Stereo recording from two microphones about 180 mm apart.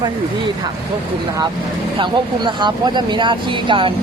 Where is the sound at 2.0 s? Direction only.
25° right (ahead or behind).